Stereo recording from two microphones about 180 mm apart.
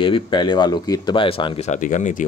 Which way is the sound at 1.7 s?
45° left (ahead or behind).